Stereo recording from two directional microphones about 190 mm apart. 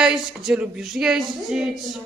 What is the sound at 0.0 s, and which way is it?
Speech, 5° right (ahead or behind).